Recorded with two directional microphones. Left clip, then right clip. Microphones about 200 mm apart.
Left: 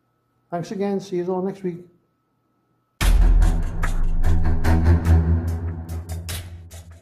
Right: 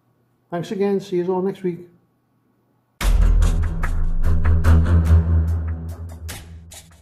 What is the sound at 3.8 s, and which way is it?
Music, centre (ahead or behind).